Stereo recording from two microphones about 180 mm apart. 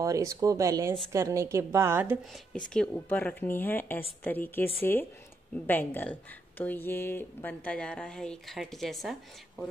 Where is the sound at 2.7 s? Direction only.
5° left (ahead or behind).